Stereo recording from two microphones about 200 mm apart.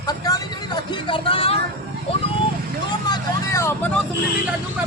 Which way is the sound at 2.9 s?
20° left (ahead or behind).